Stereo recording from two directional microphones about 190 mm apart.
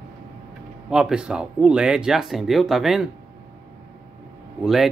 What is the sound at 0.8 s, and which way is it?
Speech, 5° right (ahead or behind).